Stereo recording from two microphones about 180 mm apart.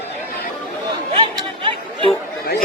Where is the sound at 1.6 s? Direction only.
30° right (ahead or behind).